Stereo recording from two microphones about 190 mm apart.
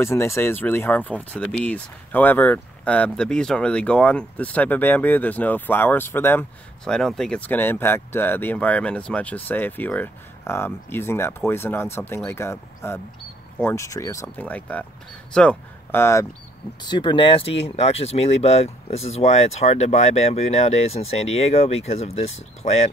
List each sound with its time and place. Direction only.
0.0 s speech: 15° left (ahead or behind); by 22.8 s 35° left (ahead or behind)